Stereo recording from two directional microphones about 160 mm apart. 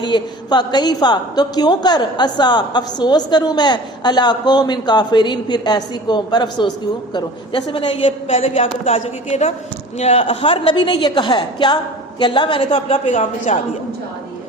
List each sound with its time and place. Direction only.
0.0 s a woman's voice: 25° left (ahead or behind)
13.1 s a woman's voice: 50° left (ahead or behind)